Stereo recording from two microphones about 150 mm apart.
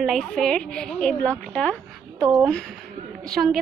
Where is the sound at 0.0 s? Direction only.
5° left (ahead or behind).